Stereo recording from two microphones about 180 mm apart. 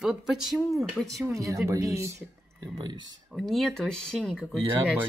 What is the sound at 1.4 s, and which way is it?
Speech, 15° right (ahead or behind).